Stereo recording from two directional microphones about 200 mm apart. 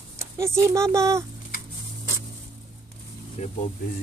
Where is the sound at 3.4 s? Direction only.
35° left (ahead or behind).